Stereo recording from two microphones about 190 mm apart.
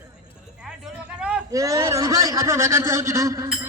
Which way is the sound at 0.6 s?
5° right (ahead or behind).